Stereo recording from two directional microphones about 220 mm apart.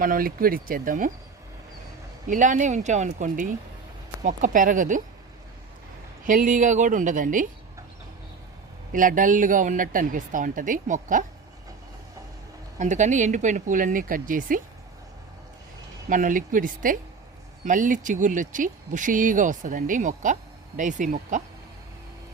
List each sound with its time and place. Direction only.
0.0 s speech: 40° right (ahead or behind)
2.2 s speech: 35° right (ahead or behind)
6.2 s speech: 35° right (ahead or behind)
8.9 s speech: 35° right (ahead or behind)
12.8 s speech: 35° right (ahead or behind)
16.0 s speech: 35° right (ahead or behind)